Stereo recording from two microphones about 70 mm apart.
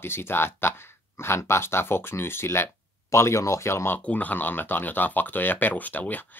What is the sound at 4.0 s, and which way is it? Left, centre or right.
Speech, left.